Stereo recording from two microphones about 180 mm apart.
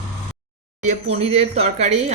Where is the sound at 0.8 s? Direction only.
35° right (ahead or behind).